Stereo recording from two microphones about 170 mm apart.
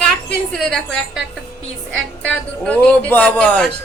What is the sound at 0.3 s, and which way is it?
A woman's voice, 5° left (ahead or behind).